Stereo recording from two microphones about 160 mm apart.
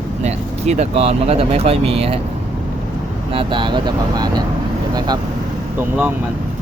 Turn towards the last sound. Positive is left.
turn(degrees=-10)  # may be behind; listen again after turning